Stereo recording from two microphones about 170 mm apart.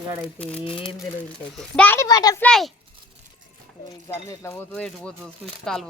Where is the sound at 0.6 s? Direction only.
30° left (ahead or behind).